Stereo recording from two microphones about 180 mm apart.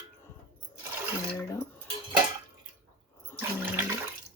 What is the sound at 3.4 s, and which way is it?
Toilet flush, 10° right (ahead or behind).